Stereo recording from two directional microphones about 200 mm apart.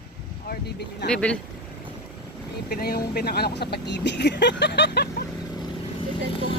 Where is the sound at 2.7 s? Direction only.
50° left (ahead or behind).